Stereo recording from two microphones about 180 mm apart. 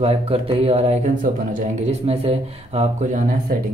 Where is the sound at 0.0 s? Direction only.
35° right (ahead or behind).